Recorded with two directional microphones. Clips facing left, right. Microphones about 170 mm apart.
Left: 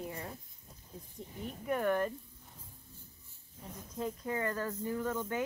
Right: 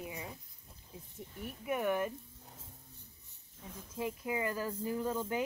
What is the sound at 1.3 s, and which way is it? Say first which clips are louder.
Speech: left 2 dB; 20° left (ahead or behind).